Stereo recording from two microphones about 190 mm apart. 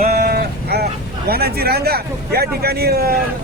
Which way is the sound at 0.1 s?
55° right (ahead or behind).